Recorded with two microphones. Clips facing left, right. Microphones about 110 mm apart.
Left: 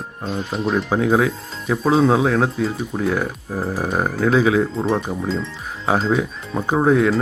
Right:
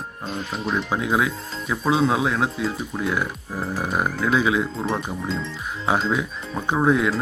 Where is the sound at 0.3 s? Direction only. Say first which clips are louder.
Left 5 dB; centre (ahead or behind).